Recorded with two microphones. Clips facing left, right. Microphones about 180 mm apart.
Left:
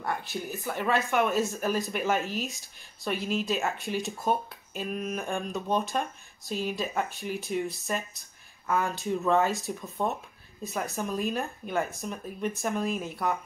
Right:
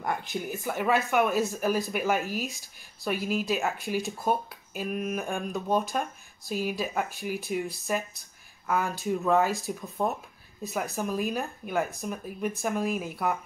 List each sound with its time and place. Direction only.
0.0 s speech: 15° right (ahead or behind)